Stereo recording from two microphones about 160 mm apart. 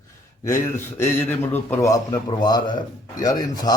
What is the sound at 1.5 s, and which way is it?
Speech, 15° left (ahead or behind).